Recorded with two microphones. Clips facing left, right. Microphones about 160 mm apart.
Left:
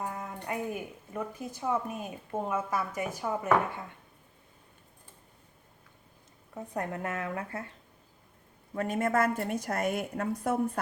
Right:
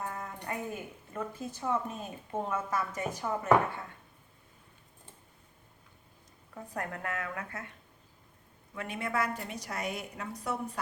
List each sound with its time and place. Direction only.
0.0 s a sound: 15° left (ahead or behind)
0.4 s a woman's voice: 15° left (ahead or behind)
6.5 s a woman's voice: 25° left (ahead or behind)
8.7 s a woman's voice: 40° left (ahead or behind)